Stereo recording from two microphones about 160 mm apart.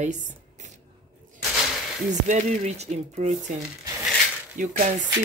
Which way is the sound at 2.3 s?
45° right (ahead or behind).